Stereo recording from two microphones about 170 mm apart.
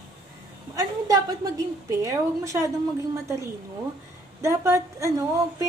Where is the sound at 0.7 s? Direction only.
20° right (ahead or behind).